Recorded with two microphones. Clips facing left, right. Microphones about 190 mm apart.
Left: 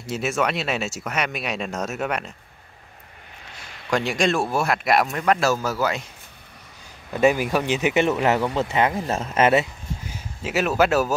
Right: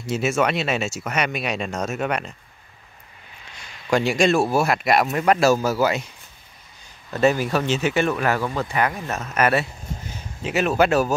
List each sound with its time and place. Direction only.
0.0 s speech: centre (ahead or behind)
3.9 s speech: 5° right (ahead or behind)
5.1 s a man's voice: 10° right (ahead or behind)
7.1 s speech: 10° left (ahead or behind)
10.1 s speech: 5° left (ahead or behind)